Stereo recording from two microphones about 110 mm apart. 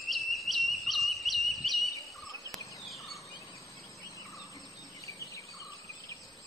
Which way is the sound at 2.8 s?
Centre (ahead or behind).